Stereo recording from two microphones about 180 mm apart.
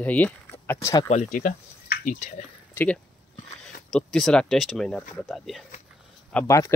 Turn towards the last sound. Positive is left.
turn(degrees=15)  # may be behind; listen again after turning